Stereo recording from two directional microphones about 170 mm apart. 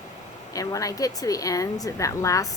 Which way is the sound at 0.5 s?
20° left (ahead or behind).